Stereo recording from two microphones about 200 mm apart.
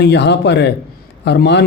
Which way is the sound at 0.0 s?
60° left (ahead or behind).